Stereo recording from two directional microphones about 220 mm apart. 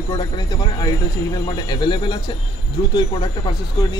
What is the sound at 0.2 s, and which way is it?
Speech, 20° left (ahead or behind).